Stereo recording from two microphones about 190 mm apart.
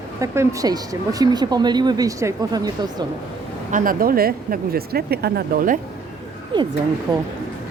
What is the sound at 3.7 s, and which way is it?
Speech, 45° right (ahead or behind).